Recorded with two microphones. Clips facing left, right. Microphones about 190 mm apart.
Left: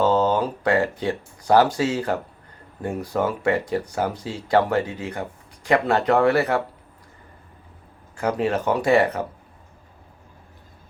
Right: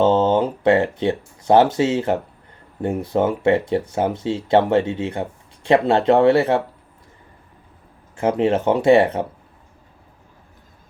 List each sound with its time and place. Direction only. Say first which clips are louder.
0.0 s speech: right 3 dB; 25° right (ahead or behind)
8.1 s speech: right 4 dB; 25° right (ahead or behind)